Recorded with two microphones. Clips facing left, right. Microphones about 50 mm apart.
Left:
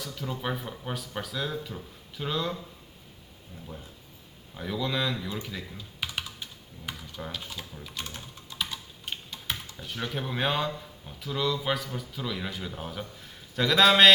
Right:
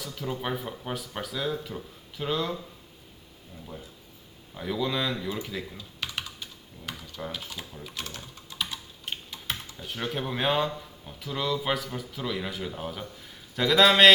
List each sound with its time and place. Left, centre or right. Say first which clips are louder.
0.0 s speech: right 1 dB; centre
4.8 s speech: right 1 dB; centre
5.7 s typing: even; centre
7.2 s speech: right 3 dB; centre
8.4 s typing: even; centre
10.1 s speech: right 2 dB; centre